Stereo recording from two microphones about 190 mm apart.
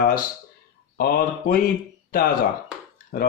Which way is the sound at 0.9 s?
50° left (ahead or behind).